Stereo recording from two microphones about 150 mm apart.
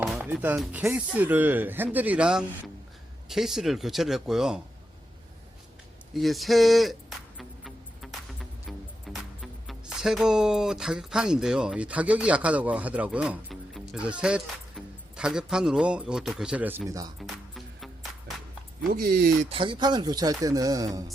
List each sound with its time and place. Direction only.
0.3 s a man's voice: 15° right (ahead or behind)
6.1 s a man's voice: centre (ahead or behind)
7.3 s music: centre (ahead or behind)
15.1 s a man's voice: 5° right (ahead or behind)
17.2 s music: centre (ahead or behind)
18.9 s speech: 90° right
19.5 s speech: 35° right (ahead or behind)